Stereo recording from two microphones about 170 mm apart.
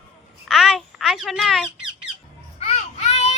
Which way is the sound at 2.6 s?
40° left (ahead or behind).